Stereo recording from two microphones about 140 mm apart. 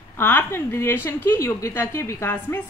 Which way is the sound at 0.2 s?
15° left (ahead or behind).